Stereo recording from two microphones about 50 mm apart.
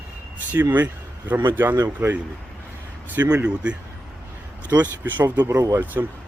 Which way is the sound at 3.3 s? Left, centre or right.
Right.